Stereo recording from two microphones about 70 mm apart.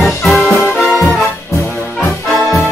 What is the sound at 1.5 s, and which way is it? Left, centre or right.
Brass instrument, left.